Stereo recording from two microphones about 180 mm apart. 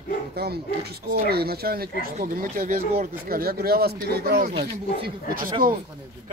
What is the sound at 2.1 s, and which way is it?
Speech, 45° right (ahead or behind).